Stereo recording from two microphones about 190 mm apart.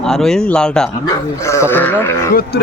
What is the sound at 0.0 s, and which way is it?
Speech, 5° left (ahead or behind).